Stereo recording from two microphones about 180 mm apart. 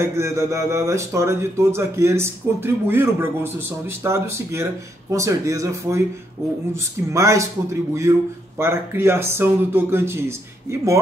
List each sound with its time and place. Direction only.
0.0 s speech: 15° right (ahead or behind)